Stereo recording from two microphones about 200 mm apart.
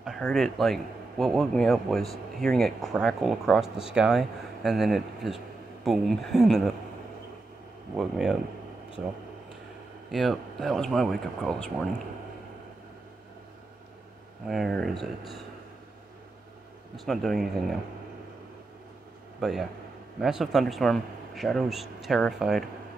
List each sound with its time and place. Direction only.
0.0 s a man's voice: centre (ahead or behind)
7.9 s a man's voice: 5° right (ahead or behind)
10.1 s a man's voice: centre (ahead or behind)
14.5 s a man's voice: centre (ahead or behind)
16.9 s a man's voice: centre (ahead or behind)
19.4 s a man's voice: centre (ahead or behind)